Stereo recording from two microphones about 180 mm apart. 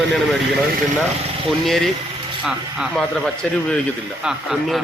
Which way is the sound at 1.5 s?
Centre (ahead or behind).